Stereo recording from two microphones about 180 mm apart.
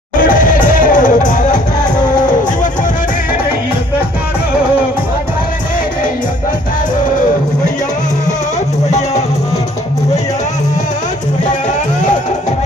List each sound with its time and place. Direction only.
0.2 s music: 50° left (ahead or behind)
8.9 s music: 40° left (ahead or behind)